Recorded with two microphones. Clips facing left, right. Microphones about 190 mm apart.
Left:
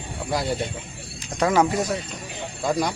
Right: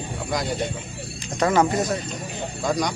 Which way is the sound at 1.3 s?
5° left (ahead or behind).